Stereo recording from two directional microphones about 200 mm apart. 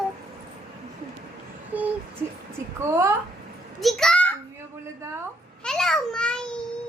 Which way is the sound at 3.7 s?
Centre (ahead or behind).